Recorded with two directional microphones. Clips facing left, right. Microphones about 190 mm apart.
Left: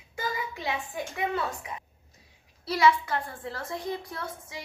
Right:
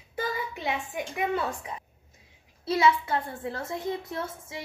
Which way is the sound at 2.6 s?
25° right (ahead or behind).